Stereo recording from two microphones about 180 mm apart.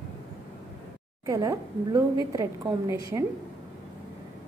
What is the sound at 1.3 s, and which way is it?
A woman's voice, 15° right (ahead or behind).